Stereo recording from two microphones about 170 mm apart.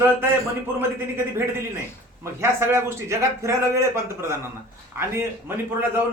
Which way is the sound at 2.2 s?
15° right (ahead or behind).